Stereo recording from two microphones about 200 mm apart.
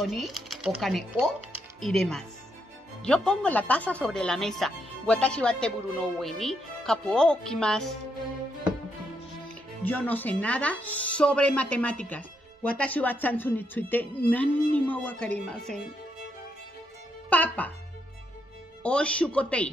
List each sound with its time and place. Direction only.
0.0 s speech: centre (ahead or behind)
9.8 s speech: 10° left (ahead or behind)
17.3 s speech: 5° left (ahead or behind)
18.8 s speech: 5° left (ahead or behind)